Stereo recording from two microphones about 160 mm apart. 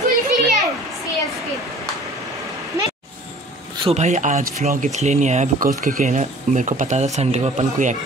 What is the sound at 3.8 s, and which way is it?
Speech, 40° right (ahead or behind).